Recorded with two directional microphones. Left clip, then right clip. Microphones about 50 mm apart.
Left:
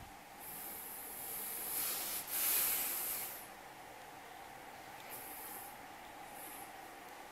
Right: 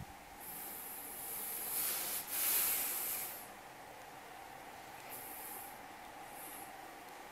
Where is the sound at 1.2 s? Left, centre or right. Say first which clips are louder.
Even; centre.